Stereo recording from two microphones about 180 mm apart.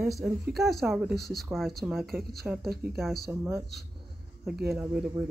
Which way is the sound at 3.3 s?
15° right (ahead or behind).